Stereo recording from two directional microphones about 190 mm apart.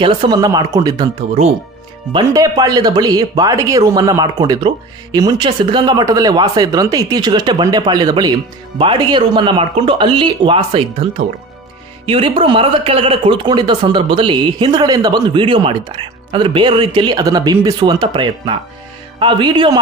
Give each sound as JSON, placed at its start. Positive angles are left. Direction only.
{"t": 0.0, "sound": "speech", "side_deg": -25}
{"t": 2.1, "sound": "speech", "side_deg": -20}